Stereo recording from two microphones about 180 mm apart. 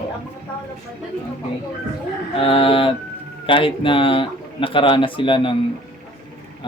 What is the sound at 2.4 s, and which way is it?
Speech, 30° left (ahead or behind).